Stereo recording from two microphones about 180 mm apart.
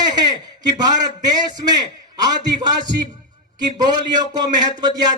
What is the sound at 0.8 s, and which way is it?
A man's voice, 25° right (ahead or behind).